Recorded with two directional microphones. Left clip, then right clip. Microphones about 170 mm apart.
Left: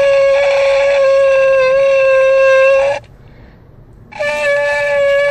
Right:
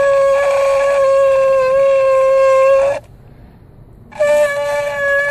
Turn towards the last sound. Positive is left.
turn(degrees=-30)  # may be behind; listen again after turning